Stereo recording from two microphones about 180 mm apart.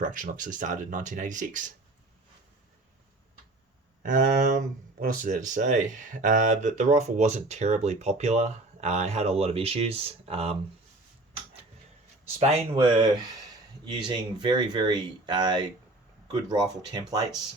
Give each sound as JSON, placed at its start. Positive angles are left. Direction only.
{"t": 0.0, "sound": "speech", "side_deg": -45}
{"t": 4.0, "sound": "speech", "side_deg": -45}
{"t": 12.4, "sound": "speech", "side_deg": -35}